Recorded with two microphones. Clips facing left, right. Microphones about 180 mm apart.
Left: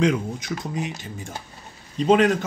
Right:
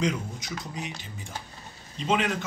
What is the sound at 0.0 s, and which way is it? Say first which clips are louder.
Speech: left 7 dB; 60° left (ahead or behind).